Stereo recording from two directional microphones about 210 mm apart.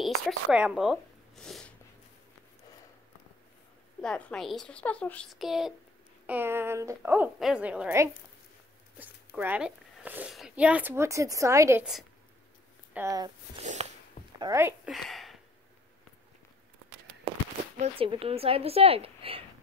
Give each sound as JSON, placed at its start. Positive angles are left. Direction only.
{"t": 0.0, "sound": "a sound", "side_deg": -5}
{"t": 4.0, "sound": "speech", "side_deg": 5}
{"t": 11.8, "sound": "speech", "side_deg": 0}
{"t": 12.9, "sound": "speech", "side_deg": -15}
{"t": 13.6, "sound": "a sound", "side_deg": -30}
{"t": 14.4, "sound": "speech", "side_deg": -15}
{"t": 14.9, "sound": "speech", "side_deg": 0}
{"t": 17.7, "sound": "a woman's voice", "side_deg": -30}